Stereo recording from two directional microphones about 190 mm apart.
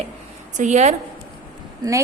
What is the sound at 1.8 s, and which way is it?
Speech, 20° right (ahead or behind).